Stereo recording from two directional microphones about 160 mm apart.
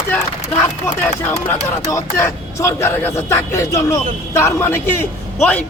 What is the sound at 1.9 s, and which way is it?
Speech, 15° left (ahead or behind).